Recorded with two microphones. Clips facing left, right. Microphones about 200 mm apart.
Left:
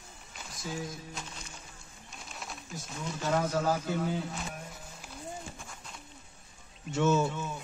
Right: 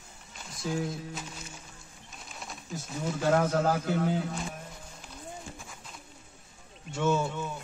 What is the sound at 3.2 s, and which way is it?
Speech, 60° right (ahead or behind).